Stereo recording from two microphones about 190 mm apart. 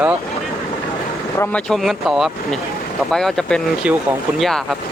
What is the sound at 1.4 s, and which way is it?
Speech, 5° left (ahead or behind).